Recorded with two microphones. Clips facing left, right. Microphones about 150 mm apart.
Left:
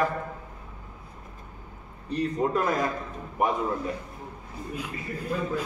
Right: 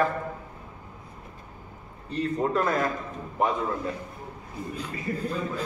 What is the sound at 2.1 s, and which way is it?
Speech, 15° left (ahead or behind).